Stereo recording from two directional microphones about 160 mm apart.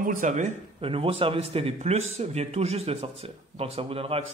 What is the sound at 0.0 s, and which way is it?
Speech, 55° right (ahead or behind).